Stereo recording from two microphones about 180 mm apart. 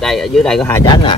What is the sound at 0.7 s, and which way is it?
Speech, 25° left (ahead or behind).